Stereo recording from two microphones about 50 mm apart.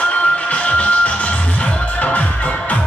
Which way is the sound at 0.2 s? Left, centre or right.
Left.